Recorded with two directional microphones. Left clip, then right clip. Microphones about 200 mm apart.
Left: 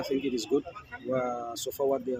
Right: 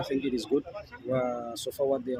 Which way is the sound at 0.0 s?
5° right (ahead or behind).